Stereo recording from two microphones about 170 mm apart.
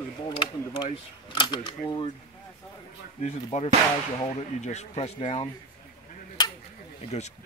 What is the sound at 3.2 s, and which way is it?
Speech, 40° left (ahead or behind).